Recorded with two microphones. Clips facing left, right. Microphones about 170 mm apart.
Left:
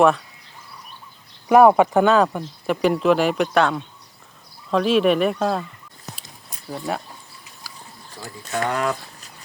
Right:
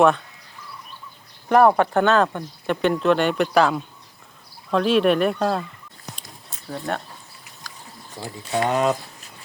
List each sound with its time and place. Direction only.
1.5 s speech: 5° left (ahead or behind)
6.2 s a sound: 15° left (ahead or behind)
6.7 s speech: 5° left (ahead or behind)
8.2 s speech: 20° right (ahead or behind)